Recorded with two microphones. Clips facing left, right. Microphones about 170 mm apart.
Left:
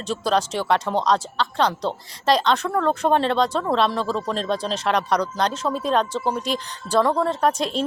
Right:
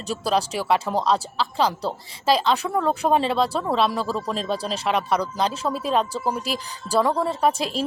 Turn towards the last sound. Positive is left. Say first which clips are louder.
# left 1 dB
turn(degrees=-5)  # may be behind; listen again after turning